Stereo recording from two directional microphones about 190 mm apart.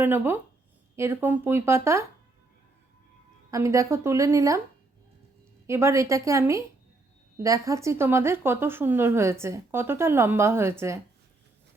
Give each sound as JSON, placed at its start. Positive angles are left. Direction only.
{"t": 0.0, "sound": "speech", "side_deg": -10}
{"t": 3.5, "sound": "speech", "side_deg": -15}
{"t": 5.6, "sound": "speech", "side_deg": -15}